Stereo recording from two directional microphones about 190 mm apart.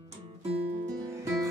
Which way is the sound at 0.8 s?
15° right (ahead or behind).